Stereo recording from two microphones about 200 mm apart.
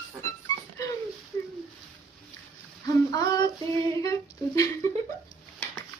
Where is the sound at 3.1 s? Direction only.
20° left (ahead or behind).